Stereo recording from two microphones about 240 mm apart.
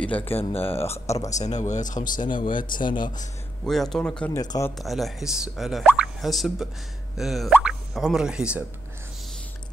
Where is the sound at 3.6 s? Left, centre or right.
Centre.